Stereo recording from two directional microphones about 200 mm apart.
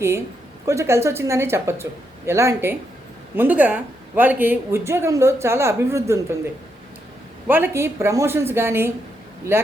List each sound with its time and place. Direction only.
0.6 s speech: 15° right (ahead or behind)
7.4 s speech: 10° right (ahead or behind)